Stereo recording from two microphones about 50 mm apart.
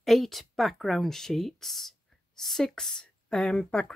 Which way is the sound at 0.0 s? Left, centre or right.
Centre.